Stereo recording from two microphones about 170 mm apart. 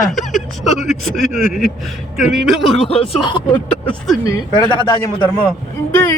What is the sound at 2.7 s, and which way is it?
Speech, 35° left (ahead or behind).